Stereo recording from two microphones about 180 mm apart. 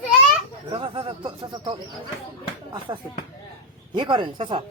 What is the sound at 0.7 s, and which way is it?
Speech, 30° right (ahead or behind).